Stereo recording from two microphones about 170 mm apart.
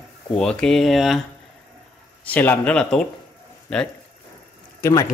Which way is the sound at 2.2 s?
10° left (ahead or behind).